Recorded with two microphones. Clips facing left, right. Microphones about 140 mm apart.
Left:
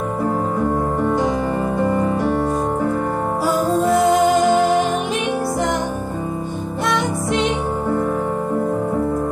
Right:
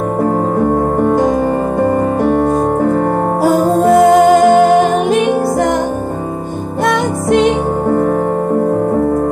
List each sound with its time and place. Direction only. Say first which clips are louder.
0.2 s music: right 6 dB; 50° right (ahead or behind)
6.9 s music: right 7 dB; 50° right (ahead or behind)